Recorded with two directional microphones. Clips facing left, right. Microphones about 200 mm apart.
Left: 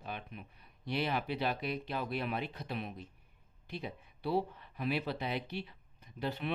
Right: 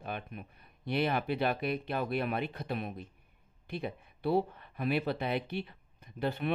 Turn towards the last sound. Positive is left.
turn(degrees=-50)  # may be behind; listen again after turning